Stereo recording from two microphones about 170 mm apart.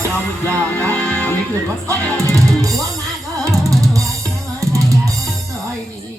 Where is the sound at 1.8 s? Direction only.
15° right (ahead or behind).